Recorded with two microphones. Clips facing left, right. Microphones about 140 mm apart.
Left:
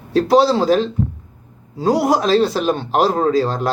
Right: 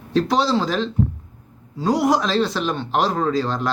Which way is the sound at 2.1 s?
5° left (ahead or behind).